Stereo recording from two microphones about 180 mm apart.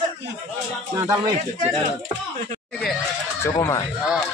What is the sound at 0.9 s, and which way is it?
Speech, 20° right (ahead or behind).